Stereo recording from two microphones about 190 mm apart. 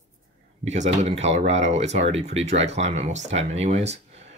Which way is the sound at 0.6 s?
35° right (ahead or behind).